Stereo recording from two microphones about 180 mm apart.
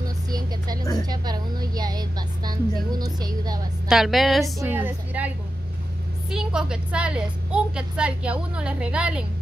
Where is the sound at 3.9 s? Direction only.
Centre (ahead or behind).